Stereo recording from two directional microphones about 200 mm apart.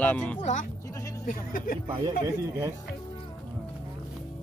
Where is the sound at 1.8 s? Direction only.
20° right (ahead or behind).